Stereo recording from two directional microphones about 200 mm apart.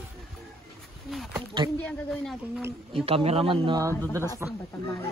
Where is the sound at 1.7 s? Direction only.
5° left (ahead or behind).